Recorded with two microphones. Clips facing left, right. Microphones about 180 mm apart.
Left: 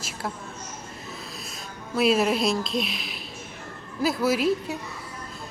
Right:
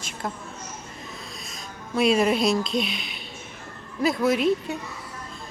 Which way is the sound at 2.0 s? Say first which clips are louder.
Right 1 dB; 5° left (ahead or behind).